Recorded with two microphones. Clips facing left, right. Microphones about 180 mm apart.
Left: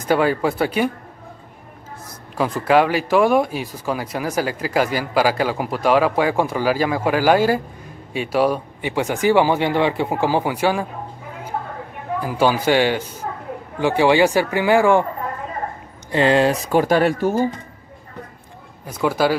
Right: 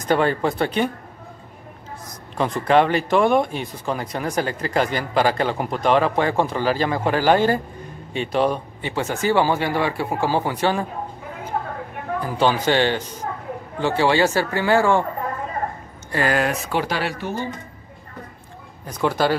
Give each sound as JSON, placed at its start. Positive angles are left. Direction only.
{"t": 0.0, "sound": "speech", "side_deg": 5}
{"t": 2.3, "sound": "speech", "side_deg": 5}
{"t": 12.2, "sound": "speech", "side_deg": 10}
{"t": 16.1, "sound": "speech", "side_deg": 25}
{"t": 18.9, "sound": "speech", "side_deg": 5}